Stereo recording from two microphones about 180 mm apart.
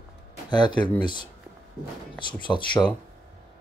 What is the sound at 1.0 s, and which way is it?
Speech, 25° left (ahead or behind).